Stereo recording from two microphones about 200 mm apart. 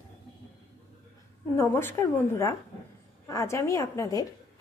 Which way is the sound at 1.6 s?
10° left (ahead or behind).